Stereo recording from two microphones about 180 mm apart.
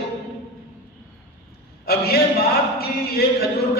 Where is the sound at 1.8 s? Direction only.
60° left (ahead or behind).